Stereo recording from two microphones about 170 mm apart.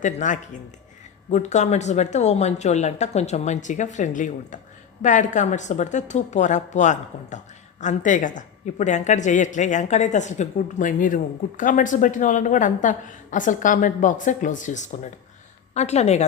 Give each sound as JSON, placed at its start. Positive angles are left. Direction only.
{"t": 0.0, "sound": "a woman's voice", "side_deg": 45}